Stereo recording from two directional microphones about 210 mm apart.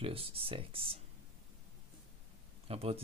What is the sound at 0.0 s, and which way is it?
Speech, 25° right (ahead or behind).